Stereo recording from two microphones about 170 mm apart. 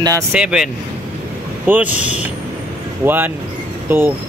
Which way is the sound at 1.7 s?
10° right (ahead or behind).